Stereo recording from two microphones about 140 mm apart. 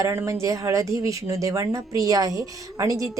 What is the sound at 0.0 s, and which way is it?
Speech, 20° right (ahead or behind).